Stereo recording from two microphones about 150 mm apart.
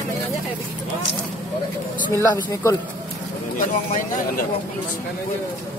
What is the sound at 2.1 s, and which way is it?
Speech, 20° left (ahead or behind).